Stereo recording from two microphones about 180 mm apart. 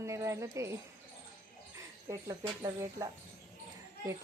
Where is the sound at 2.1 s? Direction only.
20° right (ahead or behind).